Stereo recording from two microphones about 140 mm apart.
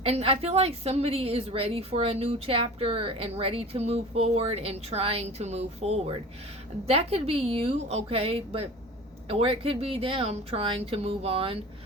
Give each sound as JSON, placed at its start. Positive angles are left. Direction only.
{"t": 0.0, "sound": "a woman's voice", "side_deg": -45}